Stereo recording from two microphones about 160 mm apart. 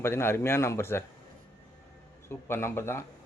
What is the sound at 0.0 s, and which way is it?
Speech, 15° left (ahead or behind).